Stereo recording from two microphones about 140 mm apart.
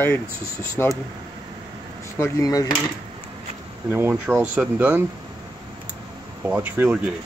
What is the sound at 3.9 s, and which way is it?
Speech, 15° right (ahead or behind).